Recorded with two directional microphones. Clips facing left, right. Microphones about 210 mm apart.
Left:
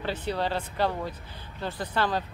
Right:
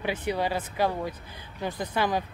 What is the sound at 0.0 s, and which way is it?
Speech, 10° right (ahead or behind).